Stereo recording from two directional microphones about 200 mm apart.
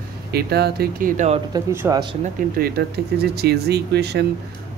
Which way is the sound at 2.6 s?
55° right (ahead or behind).